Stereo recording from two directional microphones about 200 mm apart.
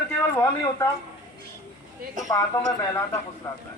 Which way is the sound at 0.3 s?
15° left (ahead or behind).